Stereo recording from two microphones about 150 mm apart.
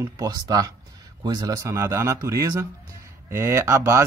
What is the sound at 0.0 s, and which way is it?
Speech, 25° right (ahead or behind).